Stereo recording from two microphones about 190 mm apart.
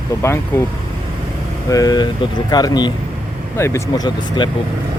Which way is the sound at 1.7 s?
20° left (ahead or behind).